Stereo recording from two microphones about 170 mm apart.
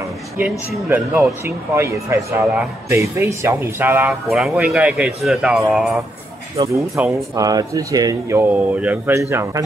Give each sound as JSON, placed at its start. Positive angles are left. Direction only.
{"t": 0.8, "sound": "speech", "side_deg": -10}
{"t": 7.0, "sound": "speech", "side_deg": -10}
{"t": 7.3, "sound": "speech", "side_deg": -20}